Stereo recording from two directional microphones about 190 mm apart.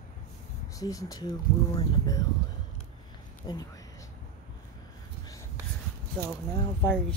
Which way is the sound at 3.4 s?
20° left (ahead or behind).